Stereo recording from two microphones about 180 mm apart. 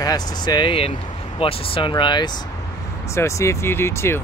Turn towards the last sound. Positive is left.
turn(degrees=15)  # may be behind; listen again after turning